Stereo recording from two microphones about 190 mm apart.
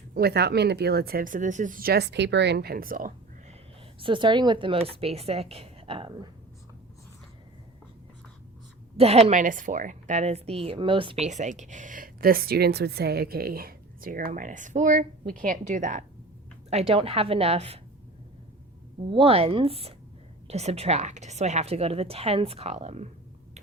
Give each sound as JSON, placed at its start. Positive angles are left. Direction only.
{"t": 0.1, "sound": "speech", "side_deg": -55}
{"t": 4.0, "sound": "a woman's voice", "side_deg": -25}
{"t": 9.0, "sound": "a woman's voice", "side_deg": -30}
{"t": 19.1, "sound": "a woman's voice", "side_deg": -30}